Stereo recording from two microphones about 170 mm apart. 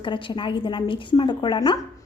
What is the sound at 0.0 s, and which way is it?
A woman's voice, 30° left (ahead or behind).